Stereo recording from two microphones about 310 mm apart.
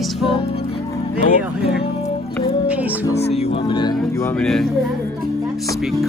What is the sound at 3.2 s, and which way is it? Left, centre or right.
Speech, centre.